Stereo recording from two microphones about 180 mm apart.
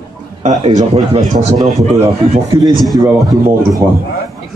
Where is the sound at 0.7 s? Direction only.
40° right (ahead or behind).